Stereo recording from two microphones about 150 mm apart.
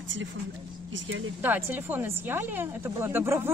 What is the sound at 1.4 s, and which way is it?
Speech, 10° right (ahead or behind).